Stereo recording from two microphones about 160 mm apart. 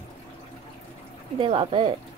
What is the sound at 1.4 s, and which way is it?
Speech, 30° right (ahead or behind).